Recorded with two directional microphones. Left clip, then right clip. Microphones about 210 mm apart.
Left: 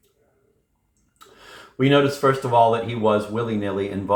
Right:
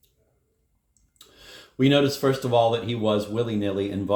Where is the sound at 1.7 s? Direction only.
40° right (ahead or behind).